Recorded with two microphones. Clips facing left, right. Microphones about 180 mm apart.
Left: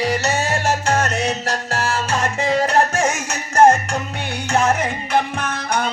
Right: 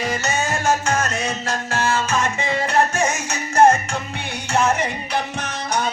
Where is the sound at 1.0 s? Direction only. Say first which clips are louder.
Left 3 dB; 70° left (ahead or behind).